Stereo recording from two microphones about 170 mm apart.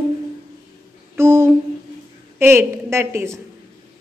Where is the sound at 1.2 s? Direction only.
15° right (ahead or behind).